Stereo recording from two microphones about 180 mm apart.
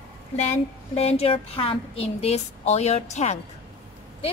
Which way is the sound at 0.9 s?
35° left (ahead or behind).